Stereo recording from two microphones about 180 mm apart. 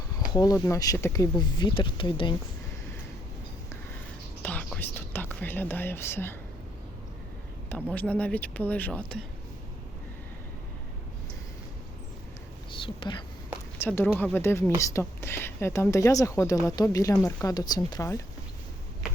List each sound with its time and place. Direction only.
0.3 s speech: 20° left (ahead or behind)
4.4 s whispering: 10° left (ahead or behind)
7.7 s speech: 10° left (ahead or behind)
12.7 s a woman's voice: 30° left (ahead or behind)
13.7 s speech: 10° left (ahead or behind)